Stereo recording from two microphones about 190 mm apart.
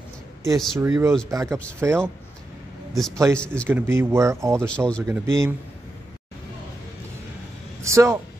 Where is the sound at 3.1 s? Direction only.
15° right (ahead or behind).